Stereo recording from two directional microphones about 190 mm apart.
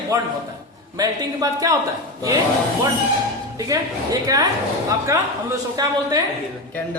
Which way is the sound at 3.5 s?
20° right (ahead or behind).